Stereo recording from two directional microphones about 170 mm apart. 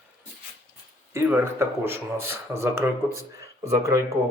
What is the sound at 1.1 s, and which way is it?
Speech, 15° right (ahead or behind).